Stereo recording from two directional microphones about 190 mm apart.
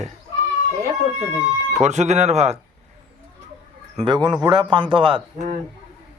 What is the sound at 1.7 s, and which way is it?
Speech, 35° right (ahead or behind).